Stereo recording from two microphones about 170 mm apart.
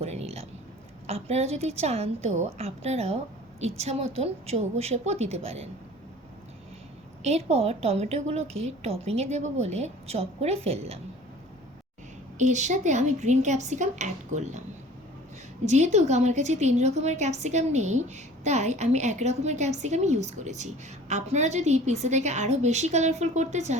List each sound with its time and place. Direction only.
0.0 s a sound: 40° right (ahead or behind)
1.0 s a woman's voice: 40° right (ahead or behind)
7.3 s a woman's voice: 40° right (ahead or behind)
12.4 s a woman's voice: 45° right (ahead or behind)
15.6 s a woman's voice: 40° right (ahead or behind)